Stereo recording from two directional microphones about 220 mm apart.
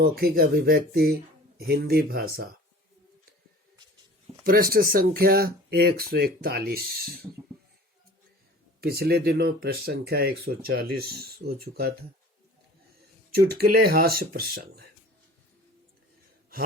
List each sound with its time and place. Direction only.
0.0 s speech: 45° right (ahead or behind)
4.7 s speech: 40° right (ahead or behind)
8.8 s speech: 45° right (ahead or behind)
13.3 s speech: 45° right (ahead or behind)